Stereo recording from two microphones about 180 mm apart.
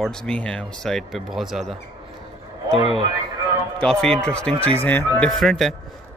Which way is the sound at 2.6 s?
30° right (ahead or behind).